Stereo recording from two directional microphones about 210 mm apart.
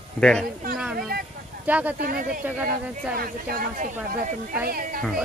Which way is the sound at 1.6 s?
5° right (ahead or behind).